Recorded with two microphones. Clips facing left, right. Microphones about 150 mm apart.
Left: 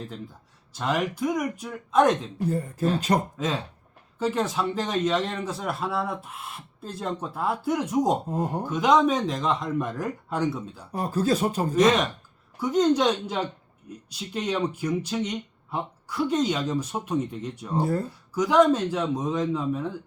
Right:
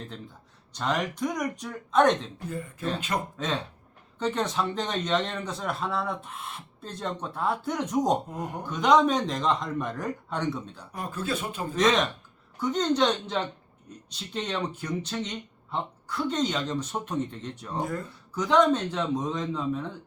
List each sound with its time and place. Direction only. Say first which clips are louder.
0.7 s speech: left 2 dB; 5° left (ahead or behind)
2.5 s speech: left 6 dB; 35° left (ahead or behind)
3.3 s speech: left 2 dB; 5° left (ahead or behind)
8.3 s speech: left 7 dB; 30° left (ahead or behind)
8.7 s speech: even; 5° left (ahead or behind)
10.9 s speech: left 7 dB; 35° left (ahead or behind)
11.7 s speech: left 2 dB; 10° left (ahead or behind)
17.7 s speech: left 6 dB; 35° left (ahead or behind)
18.3 s speech: left 3 dB; 5° left (ahead or behind)